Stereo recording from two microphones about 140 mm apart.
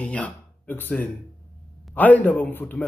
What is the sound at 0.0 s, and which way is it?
A man's voice, 10° left (ahead or behind).